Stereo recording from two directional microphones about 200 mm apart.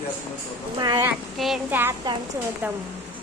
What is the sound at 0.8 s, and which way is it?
Speech, 20° right (ahead or behind).